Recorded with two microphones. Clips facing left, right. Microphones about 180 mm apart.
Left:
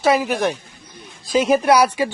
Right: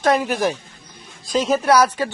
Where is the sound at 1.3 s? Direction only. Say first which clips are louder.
Left 2 dB; 10° left (ahead or behind).